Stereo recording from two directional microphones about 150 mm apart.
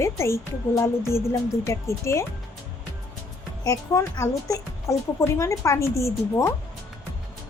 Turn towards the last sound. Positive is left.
turn(degrees=20)  # may be behind; listen again after turning